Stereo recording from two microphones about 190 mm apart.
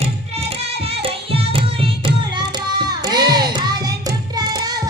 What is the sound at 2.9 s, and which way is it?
Music, 20° right (ahead or behind).